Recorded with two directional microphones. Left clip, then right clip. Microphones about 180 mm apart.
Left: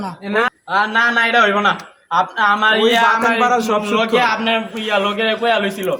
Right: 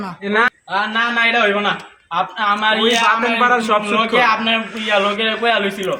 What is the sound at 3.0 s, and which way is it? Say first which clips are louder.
Speech: left 1 dB; 50° left (ahead or behind).